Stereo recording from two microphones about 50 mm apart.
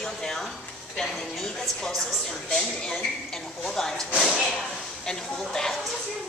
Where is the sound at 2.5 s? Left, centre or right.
Centre.